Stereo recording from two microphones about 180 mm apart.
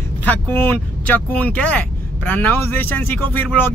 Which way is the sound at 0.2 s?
10° left (ahead or behind).